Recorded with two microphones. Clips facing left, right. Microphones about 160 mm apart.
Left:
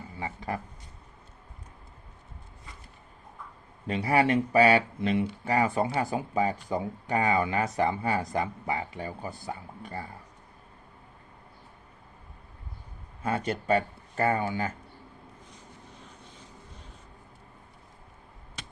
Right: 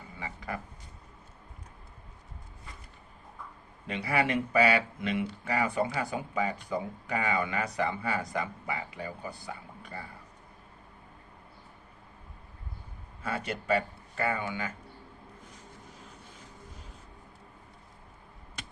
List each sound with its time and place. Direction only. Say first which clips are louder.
0.2 s speech: left 4 dB; 30° left (ahead or behind)
3.8 s speech: left 5 dB; 35° left (ahead or behind)
13.2 s speech: left 4 dB; 35° left (ahead or behind)